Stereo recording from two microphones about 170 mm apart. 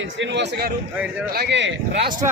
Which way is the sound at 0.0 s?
90° right.